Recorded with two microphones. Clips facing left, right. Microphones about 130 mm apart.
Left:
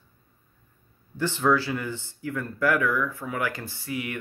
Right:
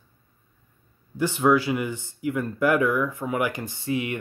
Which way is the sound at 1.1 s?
15° right (ahead or behind).